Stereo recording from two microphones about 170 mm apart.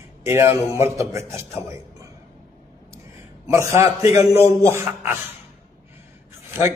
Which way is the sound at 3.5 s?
15° right (ahead or behind).